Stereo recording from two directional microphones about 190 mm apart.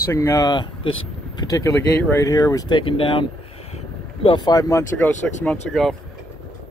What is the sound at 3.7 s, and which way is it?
Vehicle, 30° left (ahead or behind).